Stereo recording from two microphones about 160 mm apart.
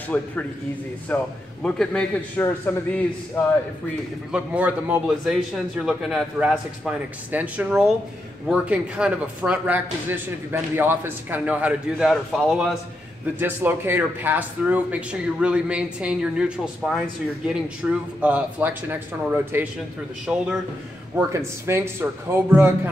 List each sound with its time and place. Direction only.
0.1 s a man's voice: 10° left (ahead or behind)
4.3 s speech: 10° right (ahead or behind)
13.4 s a man's voice: 15° right (ahead or behind)
21.3 s speech: 15° right (ahead or behind)